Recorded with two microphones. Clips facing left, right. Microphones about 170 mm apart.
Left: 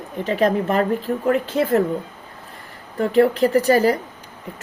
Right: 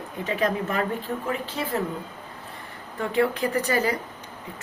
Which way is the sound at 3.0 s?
35° left (ahead or behind).